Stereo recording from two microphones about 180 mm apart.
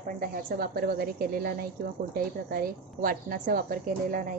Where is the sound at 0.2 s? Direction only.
55° right (ahead or behind).